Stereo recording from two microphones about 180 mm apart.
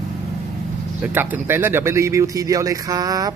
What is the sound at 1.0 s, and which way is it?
Speech, 10° right (ahead or behind).